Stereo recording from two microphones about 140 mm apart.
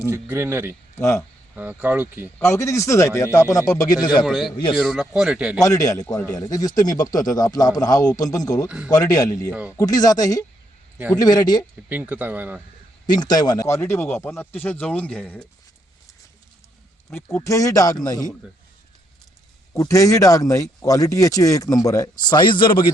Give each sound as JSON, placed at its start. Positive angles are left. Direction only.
{"t": 0.1, "sound": "speech", "side_deg": -15}
{"t": 0.9, "sound": "speech", "side_deg": 20}
{"t": 1.5, "sound": "speech", "side_deg": -10}
{"t": 2.4, "sound": "speech", "side_deg": 20}
{"t": 4.3, "sound": "speech", "side_deg": 0}
{"t": 5.6, "sound": "speech", "side_deg": 25}
{"t": 11.9, "sound": "speech", "side_deg": -10}
{"t": 13.1, "sound": "speech", "side_deg": 30}
{"t": 17.1, "sound": "speech", "side_deg": 20}
{"t": 19.7, "sound": "speech", "side_deg": 25}